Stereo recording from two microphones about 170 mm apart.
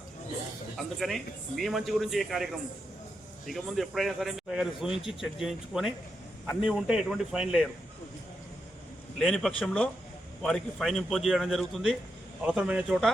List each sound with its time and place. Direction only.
0.8 s a man's voice: centre (ahead or behind)
9.1 s a man's voice: centre (ahead or behind)